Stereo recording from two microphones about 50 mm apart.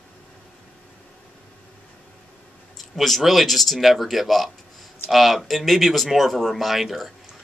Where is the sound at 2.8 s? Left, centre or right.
Centre.